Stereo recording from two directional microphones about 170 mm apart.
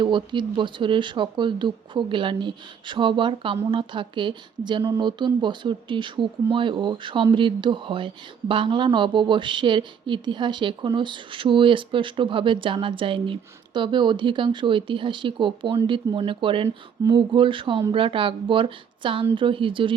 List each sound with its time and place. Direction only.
0.0 s a woman's voice: 25° right (ahead or behind)